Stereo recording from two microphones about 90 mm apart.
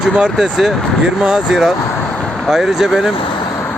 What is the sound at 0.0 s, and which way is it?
Speech, 10° right (ahead or behind).